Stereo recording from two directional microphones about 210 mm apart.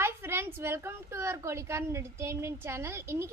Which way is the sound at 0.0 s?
10° right (ahead or behind).